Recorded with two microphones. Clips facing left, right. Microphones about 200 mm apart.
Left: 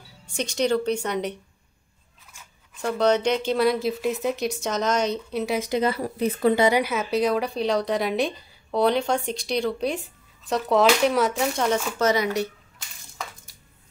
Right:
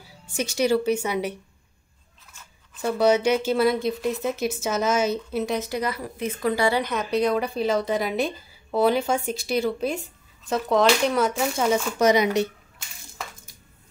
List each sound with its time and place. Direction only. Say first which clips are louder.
0.3 s speech: right 1 dB; 5° right (ahead or behind)
2.8 s a woman's voice: right 1 dB; 5° right (ahead or behind)
5.6 s speech: left 4 dB; 25° left (ahead or behind)
6.5 s speech: left 1 dB; 20° left (ahead or behind)
6.8 s a woman's voice: even; 5° left (ahead or behind)
12.0 s speech: right 4 dB; 15° right (ahead or behind)